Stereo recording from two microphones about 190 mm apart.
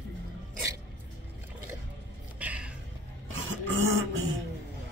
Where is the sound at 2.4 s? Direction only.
5° right (ahead or behind).